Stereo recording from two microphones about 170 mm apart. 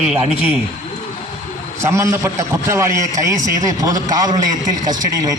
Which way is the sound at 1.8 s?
15° right (ahead or behind).